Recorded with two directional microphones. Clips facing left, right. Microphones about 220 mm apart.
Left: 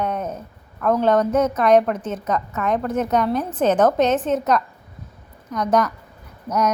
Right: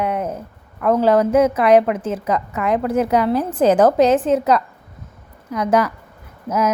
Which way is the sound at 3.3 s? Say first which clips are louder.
Right 5 dB; 30° right (ahead or behind).